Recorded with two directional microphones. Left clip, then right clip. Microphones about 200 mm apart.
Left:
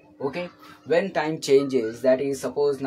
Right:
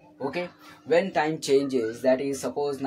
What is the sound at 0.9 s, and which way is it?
Speech, 20° left (ahead or behind).